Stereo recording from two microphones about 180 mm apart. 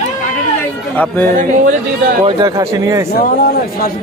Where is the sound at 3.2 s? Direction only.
55° left (ahead or behind).